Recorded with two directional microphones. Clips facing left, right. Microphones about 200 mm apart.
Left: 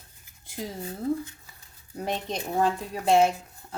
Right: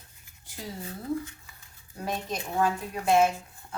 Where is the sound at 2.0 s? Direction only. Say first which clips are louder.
Left 2 dB; 25° left (ahead or behind).